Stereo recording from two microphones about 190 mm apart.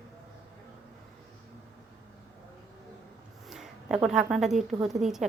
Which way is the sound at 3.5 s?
5° right (ahead or behind).